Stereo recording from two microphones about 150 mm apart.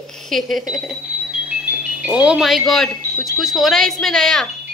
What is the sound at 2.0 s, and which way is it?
Speech, 5° right (ahead or behind).